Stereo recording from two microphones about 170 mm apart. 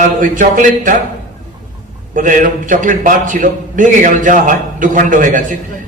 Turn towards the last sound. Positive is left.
turn(degrees=-50)  # may be behind; listen again after turning